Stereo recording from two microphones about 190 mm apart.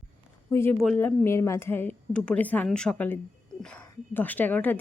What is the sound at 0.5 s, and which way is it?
A woman's voice, 10° left (ahead or behind).